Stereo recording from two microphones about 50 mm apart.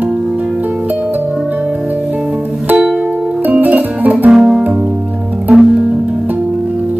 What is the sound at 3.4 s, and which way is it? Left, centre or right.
Music, right.